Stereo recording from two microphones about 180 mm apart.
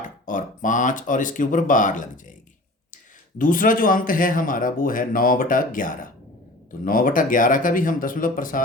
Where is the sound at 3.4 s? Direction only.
50° left (ahead or behind).